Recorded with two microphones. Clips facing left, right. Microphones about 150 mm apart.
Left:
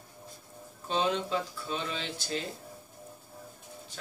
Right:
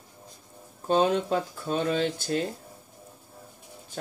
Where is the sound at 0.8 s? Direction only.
50° right (ahead or behind).